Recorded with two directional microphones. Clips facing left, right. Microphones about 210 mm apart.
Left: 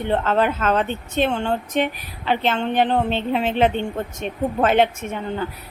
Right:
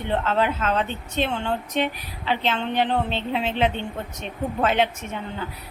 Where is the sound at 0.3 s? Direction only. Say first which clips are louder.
Left 3 dB; 50° left (ahead or behind).